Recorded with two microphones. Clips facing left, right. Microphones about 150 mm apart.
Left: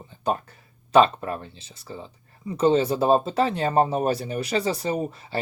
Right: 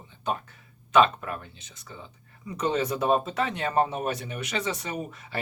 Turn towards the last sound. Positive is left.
turn(degrees=35)  # may be behind; listen again after turning